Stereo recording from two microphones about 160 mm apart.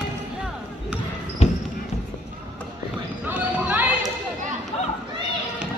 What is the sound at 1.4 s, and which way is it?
Basketball bounce, 40° left (ahead or behind).